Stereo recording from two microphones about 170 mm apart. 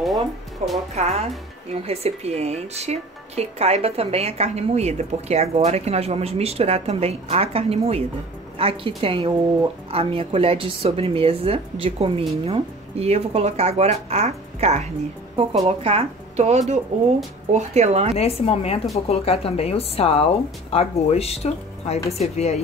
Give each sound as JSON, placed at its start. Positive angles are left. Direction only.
{"t": 0.6, "sound": "speech", "side_deg": -40}
{"t": 18.1, "sound": "speech", "side_deg": 35}